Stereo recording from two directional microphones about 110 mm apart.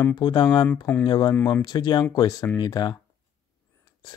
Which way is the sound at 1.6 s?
40° left (ahead or behind).